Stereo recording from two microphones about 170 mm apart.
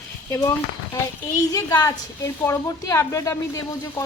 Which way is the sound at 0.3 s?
20° left (ahead or behind).